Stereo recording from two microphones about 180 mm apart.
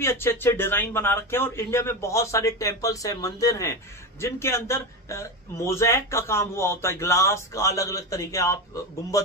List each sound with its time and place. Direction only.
0.0 s a man's voice: 15° left (ahead or behind)